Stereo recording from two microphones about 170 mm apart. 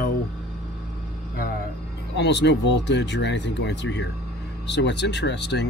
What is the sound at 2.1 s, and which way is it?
Speech, 90° left.